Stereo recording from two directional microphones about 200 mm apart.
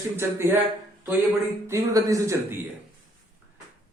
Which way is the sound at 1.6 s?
15° right (ahead or behind).